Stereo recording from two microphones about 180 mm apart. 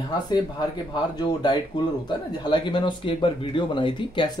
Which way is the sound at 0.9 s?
25° left (ahead or behind).